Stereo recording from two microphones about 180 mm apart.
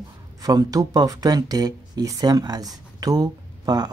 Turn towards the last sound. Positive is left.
turn(degrees=-20)  # may be behind; listen again after turning